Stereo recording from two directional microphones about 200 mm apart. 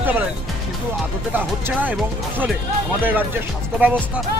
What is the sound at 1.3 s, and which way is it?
Speech, 10° right (ahead or behind).